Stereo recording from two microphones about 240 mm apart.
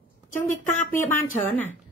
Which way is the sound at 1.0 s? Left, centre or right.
Left.